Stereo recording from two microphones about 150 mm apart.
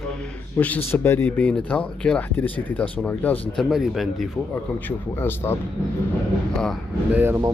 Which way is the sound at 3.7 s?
Centre (ahead or behind).